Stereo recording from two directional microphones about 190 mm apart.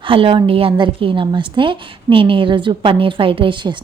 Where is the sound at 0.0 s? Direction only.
30° right (ahead or behind).